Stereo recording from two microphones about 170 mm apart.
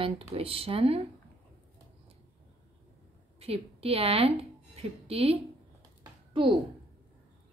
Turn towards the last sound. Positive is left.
turn(degrees=-30)  # may be behind; listen again after turning